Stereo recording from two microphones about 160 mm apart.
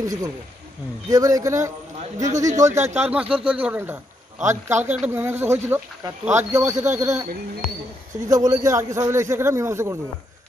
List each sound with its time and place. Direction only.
0.0 s a man's voice: 20° right (ahead or behind)
8.3 s speech: 20° right (ahead or behind)